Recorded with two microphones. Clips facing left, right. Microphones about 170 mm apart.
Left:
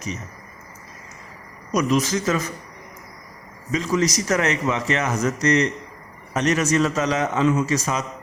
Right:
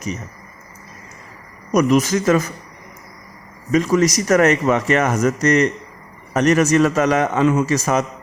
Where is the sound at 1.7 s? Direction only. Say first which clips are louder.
Right 5 dB; 55° right (ahead or behind).